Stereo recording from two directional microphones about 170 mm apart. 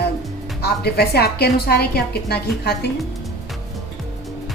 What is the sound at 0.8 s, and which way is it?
A woman's voice, 70° left (ahead or behind).